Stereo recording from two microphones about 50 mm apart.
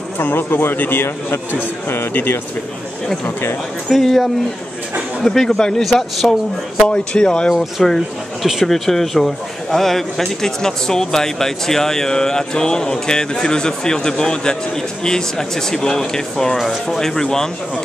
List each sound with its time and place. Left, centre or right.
0.2 s a man's voice: left
4.0 s a man's voice: centre
6.9 s a man's voice: centre